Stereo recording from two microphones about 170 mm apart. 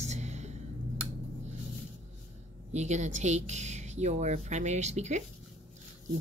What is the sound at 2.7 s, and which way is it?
Speech, 45° right (ahead or behind).